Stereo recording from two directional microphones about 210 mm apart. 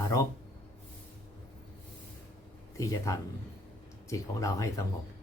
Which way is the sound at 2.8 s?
15° left (ahead or behind).